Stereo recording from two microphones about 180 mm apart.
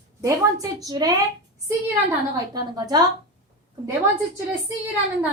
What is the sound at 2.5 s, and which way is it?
Speech, 20° right (ahead or behind).